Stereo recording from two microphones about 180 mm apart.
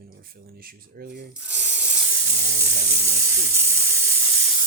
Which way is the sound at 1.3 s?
10° right (ahead or behind).